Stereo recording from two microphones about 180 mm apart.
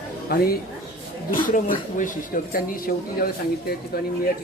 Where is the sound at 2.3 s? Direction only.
50° left (ahead or behind).